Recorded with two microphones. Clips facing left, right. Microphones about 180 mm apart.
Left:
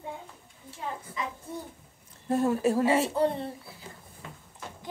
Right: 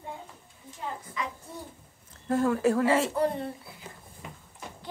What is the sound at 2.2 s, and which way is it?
A woman's voice, 20° left (ahead or behind).